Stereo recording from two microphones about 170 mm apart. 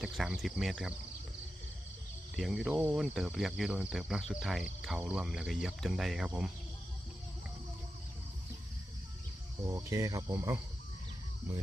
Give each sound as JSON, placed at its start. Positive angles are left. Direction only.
{"t": 0.0, "sound": "speech", "side_deg": 0}
{"t": 2.3, "sound": "speech", "side_deg": 0}
{"t": 9.6, "sound": "speech", "side_deg": -20}